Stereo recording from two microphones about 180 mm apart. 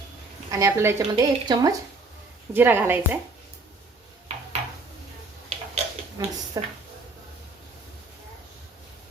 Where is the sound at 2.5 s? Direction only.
10° right (ahead or behind).